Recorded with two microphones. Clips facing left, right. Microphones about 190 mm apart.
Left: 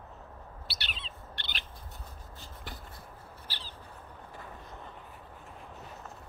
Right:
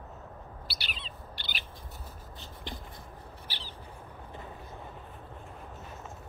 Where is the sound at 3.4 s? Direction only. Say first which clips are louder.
Even; 15° right (ahead or behind).